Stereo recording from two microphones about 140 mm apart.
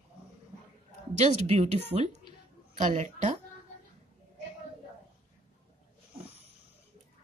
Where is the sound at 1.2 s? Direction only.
50° right (ahead or behind).